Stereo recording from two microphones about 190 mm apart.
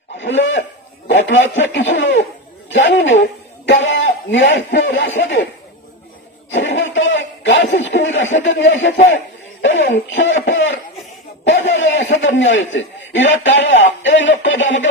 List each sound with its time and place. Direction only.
0.2 s a man's voice: 75° left (ahead or behind)
6.5 s a man's voice: 70° left (ahead or behind)
9.1 s chuckle: 75° left (ahead or behind)
10.1 s a man's voice: 75° left (ahead or behind)